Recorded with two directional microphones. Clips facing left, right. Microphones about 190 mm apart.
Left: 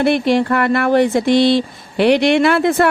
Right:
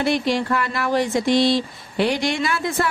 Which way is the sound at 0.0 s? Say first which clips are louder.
Left 6 dB; 60° left (ahead or behind).